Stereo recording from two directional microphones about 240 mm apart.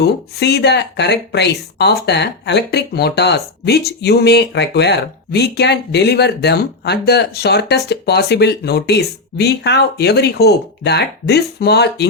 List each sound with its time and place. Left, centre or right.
0.0 s speech: left